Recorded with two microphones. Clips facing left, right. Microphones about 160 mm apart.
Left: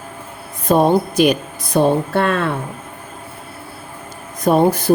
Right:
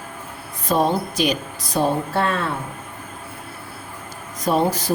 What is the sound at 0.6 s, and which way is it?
Speech, 55° left (ahead or behind).